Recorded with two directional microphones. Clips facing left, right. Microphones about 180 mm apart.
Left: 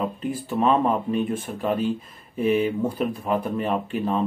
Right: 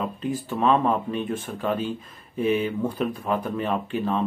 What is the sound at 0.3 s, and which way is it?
Speech, 5° left (ahead or behind).